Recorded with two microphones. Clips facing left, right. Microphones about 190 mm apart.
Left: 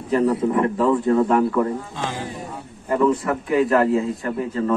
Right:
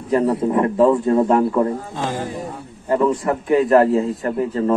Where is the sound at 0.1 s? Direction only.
30° right (ahead or behind).